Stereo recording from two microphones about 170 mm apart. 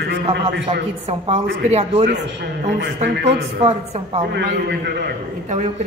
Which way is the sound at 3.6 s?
35° right (ahead or behind).